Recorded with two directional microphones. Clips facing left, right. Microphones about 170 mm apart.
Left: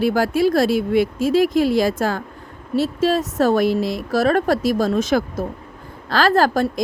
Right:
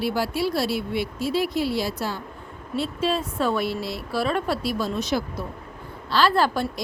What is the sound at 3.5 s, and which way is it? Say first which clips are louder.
Speech: left 8 dB; 90° left.